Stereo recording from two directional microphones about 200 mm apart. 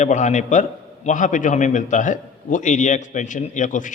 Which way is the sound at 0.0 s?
35° left (ahead or behind).